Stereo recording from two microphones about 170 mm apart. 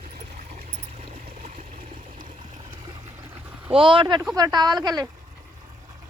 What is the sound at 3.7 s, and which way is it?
Speech, 30° right (ahead or behind).